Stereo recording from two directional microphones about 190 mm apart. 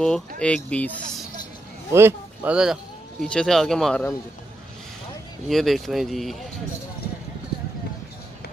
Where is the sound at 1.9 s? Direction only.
15° right (ahead or behind).